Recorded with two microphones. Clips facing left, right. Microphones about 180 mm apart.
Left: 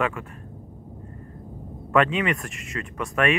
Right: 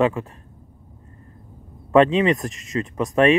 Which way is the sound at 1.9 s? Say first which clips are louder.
Right 6 dB; 30° right (ahead or behind).